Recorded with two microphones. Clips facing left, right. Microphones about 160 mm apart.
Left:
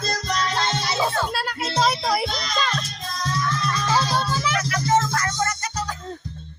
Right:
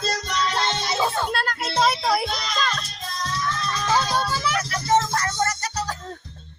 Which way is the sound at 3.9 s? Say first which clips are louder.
Right 1 dB; 10° right (ahead or behind).